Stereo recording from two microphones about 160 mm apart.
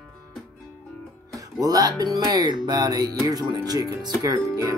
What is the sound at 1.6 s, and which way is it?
Music, 25° right (ahead or behind).